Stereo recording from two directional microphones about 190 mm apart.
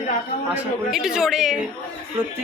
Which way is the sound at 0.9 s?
5° right (ahead or behind).